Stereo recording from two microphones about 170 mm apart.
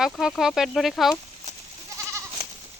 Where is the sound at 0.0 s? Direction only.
Centre (ahead or behind).